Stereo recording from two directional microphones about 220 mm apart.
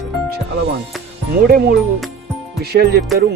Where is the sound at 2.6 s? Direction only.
45° right (ahead or behind).